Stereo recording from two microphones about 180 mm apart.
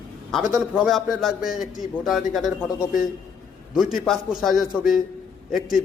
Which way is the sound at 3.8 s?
Centre (ahead or behind).